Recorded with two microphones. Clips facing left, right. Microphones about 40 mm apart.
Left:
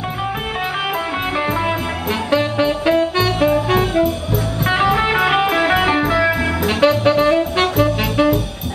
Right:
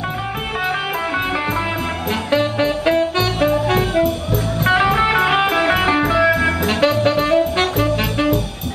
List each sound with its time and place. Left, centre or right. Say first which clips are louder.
2.3 s music: even; centre